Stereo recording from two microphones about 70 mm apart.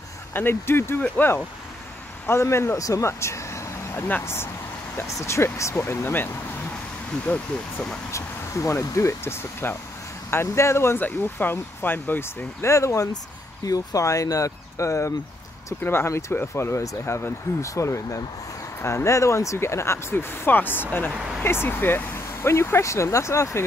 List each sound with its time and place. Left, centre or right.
0.3 s speech: left
2.2 s speech: left
5.0 s speech: left
6.0 s speech: left
8.1 s speech: left
11.0 s speech: left
12.6 s speech: left
15.8 s speech: left